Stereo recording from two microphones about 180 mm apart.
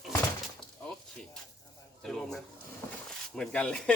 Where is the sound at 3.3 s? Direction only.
5° left (ahead or behind).